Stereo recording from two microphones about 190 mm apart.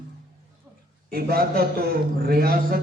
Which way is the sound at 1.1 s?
55° right (ahead or behind).